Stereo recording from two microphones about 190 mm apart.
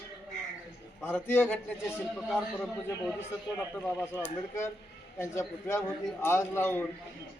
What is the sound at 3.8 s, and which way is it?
A man's voice, 15° left (ahead or behind).